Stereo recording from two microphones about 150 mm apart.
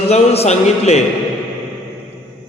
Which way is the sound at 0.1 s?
45° left (ahead or behind).